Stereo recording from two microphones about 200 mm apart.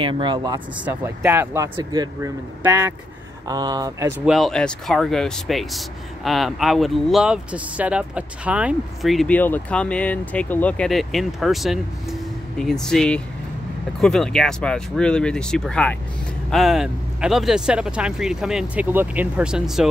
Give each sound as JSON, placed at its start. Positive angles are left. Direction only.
{"t": 0.0, "sound": "speech", "side_deg": -25}
{"t": 0.7, "sound": "speech", "side_deg": -10}
{"t": 4.3, "sound": "speech", "side_deg": 0}